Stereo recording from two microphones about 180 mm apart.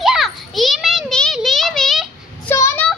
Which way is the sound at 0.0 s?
Centre (ahead or behind).